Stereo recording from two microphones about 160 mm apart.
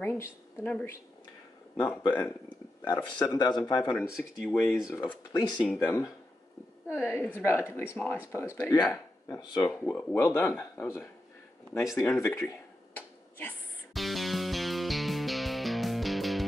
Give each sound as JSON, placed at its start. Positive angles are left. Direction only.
{"t": 0.0, "sound": "speech", "side_deg": 10}
{"t": 2.8, "sound": "speech", "side_deg": 25}
{"t": 4.2, "sound": "speech", "side_deg": 5}
{"t": 4.8, "sound": "speech", "side_deg": 20}
{"t": 9.7, "sound": "speech", "side_deg": 10}
{"t": 12.2, "sound": "a sound", "side_deg": 15}
{"t": 13.9, "sound": "music", "side_deg": 0}